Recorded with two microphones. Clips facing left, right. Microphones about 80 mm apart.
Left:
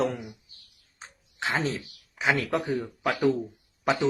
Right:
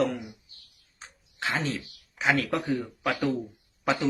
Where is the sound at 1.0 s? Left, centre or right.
Left.